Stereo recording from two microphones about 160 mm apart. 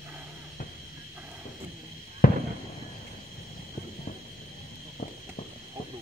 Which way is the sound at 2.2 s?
60° left (ahead or behind).